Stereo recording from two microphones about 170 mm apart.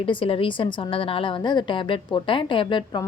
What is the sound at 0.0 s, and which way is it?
A woman's voice, 30° left (ahead or behind).